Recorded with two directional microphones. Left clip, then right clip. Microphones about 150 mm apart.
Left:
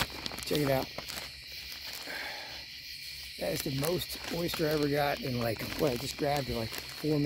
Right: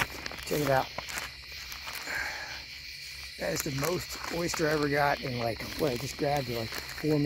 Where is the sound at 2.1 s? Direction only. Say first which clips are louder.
Right 6 dB; 25° left (ahead or behind).